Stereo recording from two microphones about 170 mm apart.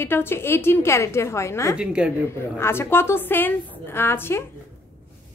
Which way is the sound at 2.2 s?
15° left (ahead or behind).